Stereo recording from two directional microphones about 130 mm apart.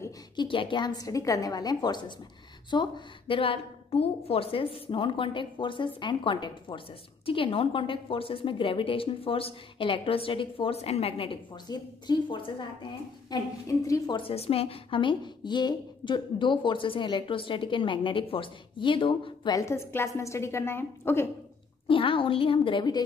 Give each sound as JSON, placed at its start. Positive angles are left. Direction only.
{"t": 0.4, "sound": "a woman's voice", "side_deg": 40}
{"t": 13.3, "sound": "a woman's voice", "side_deg": 25}
{"t": 14.1, "sound": "a woman's voice", "side_deg": 50}
{"t": 19.5, "sound": "a woman's voice", "side_deg": 20}
{"t": 21.8, "sound": "a woman's voice", "side_deg": 40}